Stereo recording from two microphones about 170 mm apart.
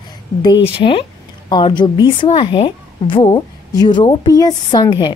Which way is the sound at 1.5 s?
25° left (ahead or behind).